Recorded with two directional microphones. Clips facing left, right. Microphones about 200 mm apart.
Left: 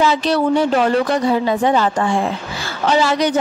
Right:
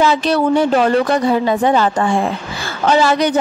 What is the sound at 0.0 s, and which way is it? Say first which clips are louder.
Speech: right 2 dB; 55° right (ahead or behind).